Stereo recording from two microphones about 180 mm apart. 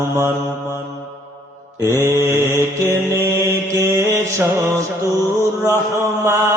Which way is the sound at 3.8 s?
15° right (ahead or behind).